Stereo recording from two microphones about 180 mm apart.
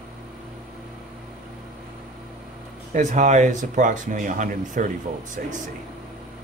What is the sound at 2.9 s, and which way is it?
Speech, 40° right (ahead or behind).